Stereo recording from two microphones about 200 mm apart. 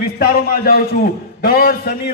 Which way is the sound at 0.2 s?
50° left (ahead or behind).